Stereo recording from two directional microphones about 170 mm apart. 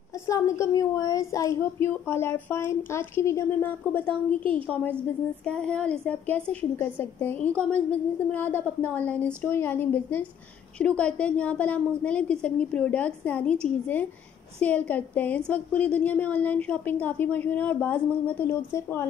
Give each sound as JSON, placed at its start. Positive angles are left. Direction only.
{"t": 0.3, "sound": "a woman's voice", "side_deg": 20}